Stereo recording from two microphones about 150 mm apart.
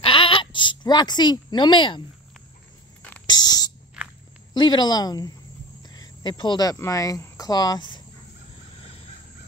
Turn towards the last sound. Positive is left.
turn(degrees=30)  # may be behind; listen again after turning